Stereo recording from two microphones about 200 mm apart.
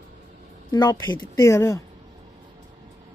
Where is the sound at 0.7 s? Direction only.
20° left (ahead or behind).